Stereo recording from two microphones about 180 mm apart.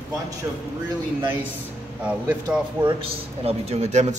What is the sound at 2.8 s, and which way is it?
A man's voice, 35° right (ahead or behind).